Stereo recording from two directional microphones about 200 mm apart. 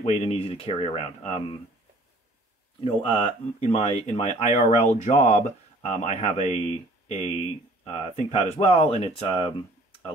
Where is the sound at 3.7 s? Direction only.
30° left (ahead or behind).